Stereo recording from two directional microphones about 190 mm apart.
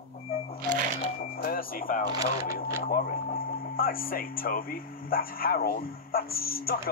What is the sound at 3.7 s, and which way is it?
Music, 50° left (ahead or behind).